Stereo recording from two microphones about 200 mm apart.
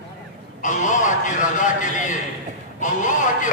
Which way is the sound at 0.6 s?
40° left (ahead or behind).